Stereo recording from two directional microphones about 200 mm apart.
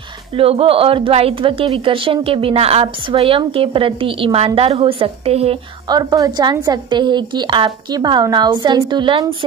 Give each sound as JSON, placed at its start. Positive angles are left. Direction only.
{"t": 0.4, "sound": "a woman's voice", "side_deg": -30}